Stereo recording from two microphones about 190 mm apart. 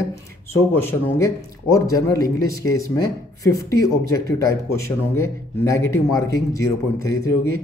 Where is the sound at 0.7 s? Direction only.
10° left (ahead or behind).